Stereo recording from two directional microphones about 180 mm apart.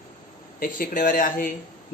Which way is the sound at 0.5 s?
50° left (ahead or behind).